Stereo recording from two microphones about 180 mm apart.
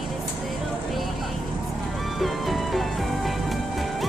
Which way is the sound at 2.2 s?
Centre (ahead or behind).